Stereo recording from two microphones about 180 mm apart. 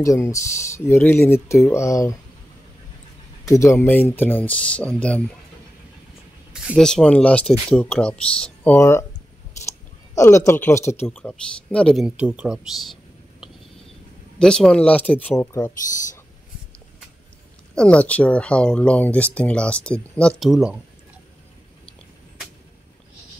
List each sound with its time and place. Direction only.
0.0 s speech: 20° left (ahead or behind)
3.4 s speech: 15° left (ahead or behind)
6.8 s speech: 5° left (ahead or behind)
14.4 s speech: 5° left (ahead or behind)
17.7 s speech: 5° left (ahead or behind)